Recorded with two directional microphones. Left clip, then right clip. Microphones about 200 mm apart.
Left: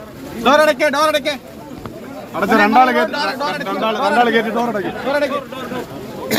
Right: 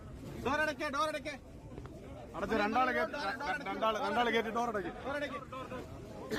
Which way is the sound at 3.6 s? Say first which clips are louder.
Left 16 dB; 35° right (ahead or behind).